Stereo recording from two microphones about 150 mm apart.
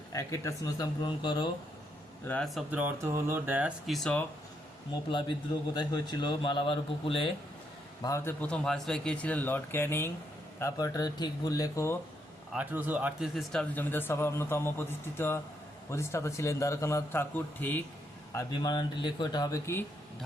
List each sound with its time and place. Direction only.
0.1 s a man's voice: 20° left (ahead or behind)
2.2 s speech: 10° left (ahead or behind)
2.6 s speech: 10° right (ahead or behind)
3.8 s speech: centre (ahead or behind)
5.7 s a man's voice: 30° left (ahead or behind)
8.0 s a man's voice: 15° left (ahead or behind)
12.5 s a man's voice: 10° right (ahead or behind); by 17.8 s 10° left (ahead or behind)
18.3 s a man's voice: 30° left (ahead or behind)